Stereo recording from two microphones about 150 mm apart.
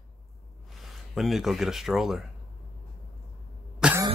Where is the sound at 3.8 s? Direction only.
5° right (ahead or behind).